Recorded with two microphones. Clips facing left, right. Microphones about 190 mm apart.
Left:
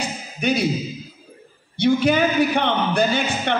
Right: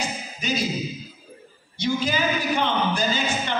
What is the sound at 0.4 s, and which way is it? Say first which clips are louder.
Speech: left 6 dB; 60° left (ahead or behind).